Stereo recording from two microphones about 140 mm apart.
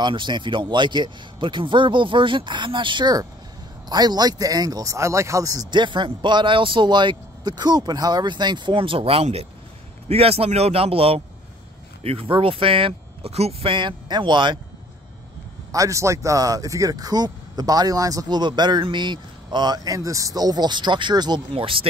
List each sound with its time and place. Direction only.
0.0 s a man's voice: 35° right (ahead or behind)
15.7 s speech: 25° right (ahead or behind); by 21.8 s 40° right (ahead or behind)